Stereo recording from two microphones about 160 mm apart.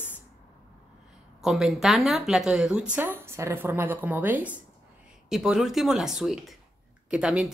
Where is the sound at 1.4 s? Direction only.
Centre (ahead or behind).